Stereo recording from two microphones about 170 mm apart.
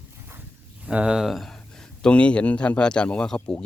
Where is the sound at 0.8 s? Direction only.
5° right (ahead or behind).